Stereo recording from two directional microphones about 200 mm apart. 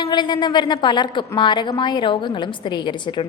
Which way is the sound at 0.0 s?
25° left (ahead or behind).